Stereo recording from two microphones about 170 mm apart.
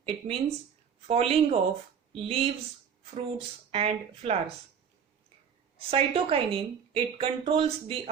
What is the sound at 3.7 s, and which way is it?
Speech, 35° right (ahead or behind).